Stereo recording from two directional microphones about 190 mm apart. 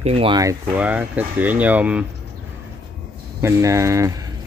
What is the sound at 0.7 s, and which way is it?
Speech, 10° right (ahead or behind).